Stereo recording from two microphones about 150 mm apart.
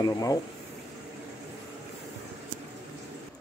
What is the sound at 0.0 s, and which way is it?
Speech, 25° left (ahead or behind).